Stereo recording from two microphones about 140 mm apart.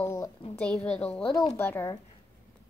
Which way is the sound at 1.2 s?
40° left (ahead or behind).